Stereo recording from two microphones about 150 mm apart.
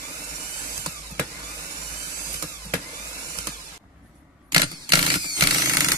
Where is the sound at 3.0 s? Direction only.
20° right (ahead or behind).